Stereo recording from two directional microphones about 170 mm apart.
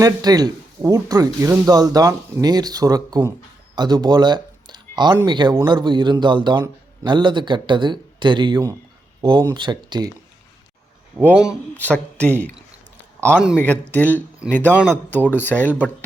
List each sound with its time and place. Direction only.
0.0 s speech: 25° right (ahead or behind)
11.7 s speech: 10° left (ahead or behind)
13.6 s speech: 10° left (ahead or behind)